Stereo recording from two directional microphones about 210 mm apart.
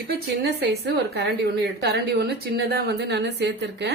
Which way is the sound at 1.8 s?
50° right (ahead or behind).